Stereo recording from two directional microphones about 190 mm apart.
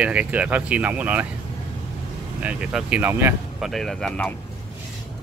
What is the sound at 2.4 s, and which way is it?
Speech, 5° right (ahead or behind).